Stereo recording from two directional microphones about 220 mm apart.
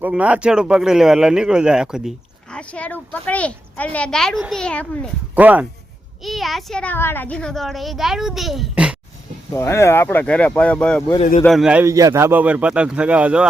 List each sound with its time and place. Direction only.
0.0 s speech: 5° right (ahead or behind)
5.3 s speech: 5° right (ahead or behind)
9.6 s speech: 10° left (ahead or behind)
11.2 s a man's voice: 30° left (ahead or behind)
11.4 s speech: centre (ahead or behind)